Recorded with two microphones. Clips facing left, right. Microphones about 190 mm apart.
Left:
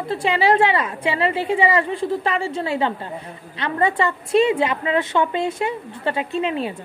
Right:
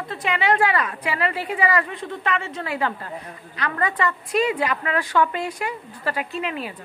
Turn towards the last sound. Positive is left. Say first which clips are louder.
# left 6 dB
turn(degrees=25)  # may be behind; listen again after turning